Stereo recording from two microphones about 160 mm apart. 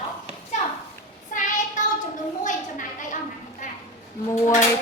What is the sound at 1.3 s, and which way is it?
Child singing, 55° left (ahead or behind).